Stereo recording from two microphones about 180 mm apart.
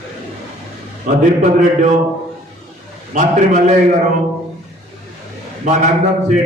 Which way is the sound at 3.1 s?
40° right (ahead or behind).